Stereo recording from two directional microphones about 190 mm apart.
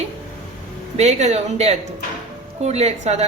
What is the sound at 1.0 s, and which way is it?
A woman's voice, 35° right (ahead or behind).